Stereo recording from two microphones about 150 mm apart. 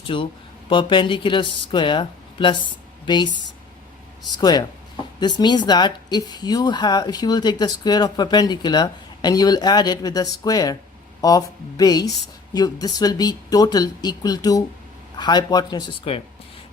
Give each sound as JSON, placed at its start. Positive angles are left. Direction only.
{"t": 0.0, "sound": "speech", "side_deg": 35}